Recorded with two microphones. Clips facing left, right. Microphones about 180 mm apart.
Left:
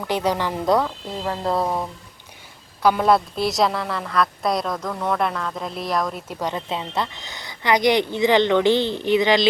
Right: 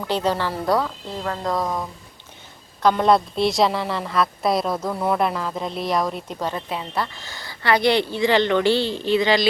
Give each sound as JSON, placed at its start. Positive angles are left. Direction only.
{"t": 0.1, "sound": "speech", "side_deg": 15}
{"t": 2.8, "sound": "a woman's voice", "side_deg": 5}
{"t": 6.4, "sound": "speech", "side_deg": 20}